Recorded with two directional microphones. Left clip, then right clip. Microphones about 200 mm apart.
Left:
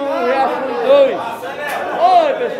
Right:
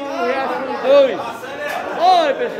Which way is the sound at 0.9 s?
5° right (ahead or behind).